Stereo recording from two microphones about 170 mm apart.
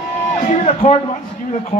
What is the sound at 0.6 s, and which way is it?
Speech, 40° left (ahead or behind).